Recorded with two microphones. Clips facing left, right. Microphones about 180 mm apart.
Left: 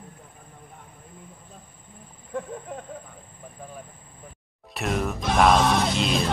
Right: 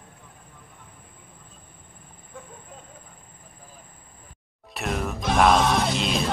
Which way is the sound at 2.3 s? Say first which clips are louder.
Left 12 dB; 65° left (ahead or behind).